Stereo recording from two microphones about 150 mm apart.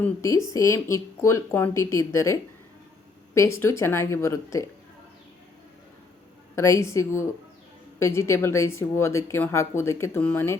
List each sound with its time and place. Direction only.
0.0 s speech: 20° left (ahead or behind)
6.6 s speech: 20° left (ahead or behind)